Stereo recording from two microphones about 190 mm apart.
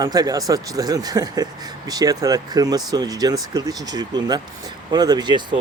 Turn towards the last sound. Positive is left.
turn(degrees=-25)  # may be behind; listen again after turning